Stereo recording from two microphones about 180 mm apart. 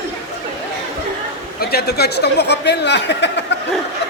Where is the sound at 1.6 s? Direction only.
60° left (ahead or behind).